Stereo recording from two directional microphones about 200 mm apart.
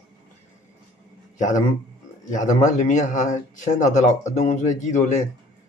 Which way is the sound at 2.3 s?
40° left (ahead or behind).